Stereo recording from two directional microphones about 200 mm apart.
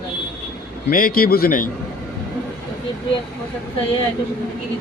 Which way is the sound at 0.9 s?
45° left (ahead or behind).